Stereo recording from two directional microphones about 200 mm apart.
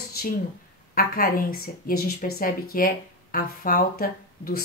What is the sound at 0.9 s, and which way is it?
Speech, 45° left (ahead or behind).